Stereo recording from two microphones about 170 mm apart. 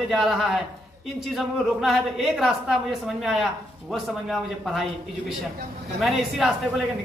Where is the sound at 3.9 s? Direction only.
Centre (ahead or behind).